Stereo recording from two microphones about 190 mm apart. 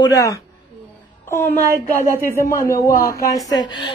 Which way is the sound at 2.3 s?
15° left (ahead or behind).